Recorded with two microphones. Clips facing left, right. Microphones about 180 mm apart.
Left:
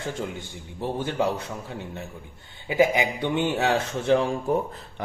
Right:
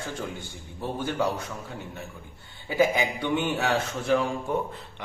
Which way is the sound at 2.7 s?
20° left (ahead or behind).